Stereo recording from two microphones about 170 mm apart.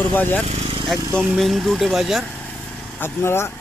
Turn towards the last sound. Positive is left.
turn(degrees=15)  # may be behind; listen again after turning